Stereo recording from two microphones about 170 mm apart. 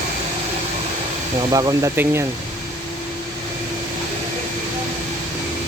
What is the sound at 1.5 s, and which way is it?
Speech, 20° right (ahead or behind).